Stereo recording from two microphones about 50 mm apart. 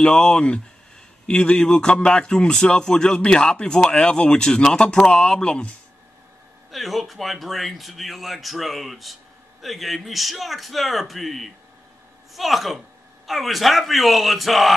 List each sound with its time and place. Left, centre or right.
0.0 s speech: centre
6.7 s speech: centre